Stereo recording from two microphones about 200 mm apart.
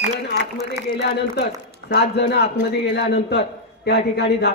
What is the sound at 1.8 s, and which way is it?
A man's voice, 55° left (ahead or behind).